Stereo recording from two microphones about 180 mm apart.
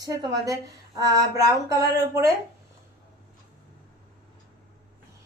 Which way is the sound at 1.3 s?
20° right (ahead or behind).